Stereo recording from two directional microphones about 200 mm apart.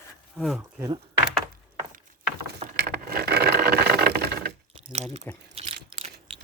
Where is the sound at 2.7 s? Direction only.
50° right (ahead or behind).